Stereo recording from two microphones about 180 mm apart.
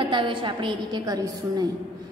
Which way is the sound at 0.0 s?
25° right (ahead or behind).